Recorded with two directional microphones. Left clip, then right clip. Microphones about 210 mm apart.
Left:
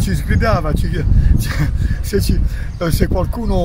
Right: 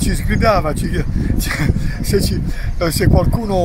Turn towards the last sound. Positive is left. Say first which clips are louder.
# right 3 dB
turn(degrees=5)  # may be behind; listen again after turning